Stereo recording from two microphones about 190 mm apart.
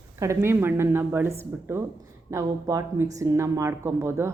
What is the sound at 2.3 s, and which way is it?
A woman's voice, 15° right (ahead or behind).